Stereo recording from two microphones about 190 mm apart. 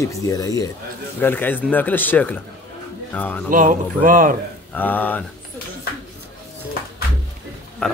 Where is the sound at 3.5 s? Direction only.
45° right (ahead or behind).